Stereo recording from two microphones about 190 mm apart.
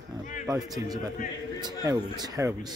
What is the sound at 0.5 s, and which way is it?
A man's voice, 20° right (ahead or behind).